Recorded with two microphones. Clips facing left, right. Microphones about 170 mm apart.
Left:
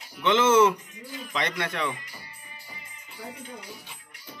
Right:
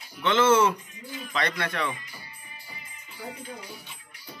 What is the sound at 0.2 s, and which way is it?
Speech, 15° left (ahead or behind).